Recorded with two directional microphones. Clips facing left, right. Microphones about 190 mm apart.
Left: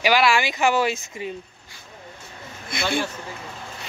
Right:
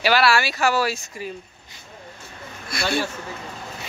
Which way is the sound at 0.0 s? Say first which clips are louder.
Even; 15° left (ahead or behind).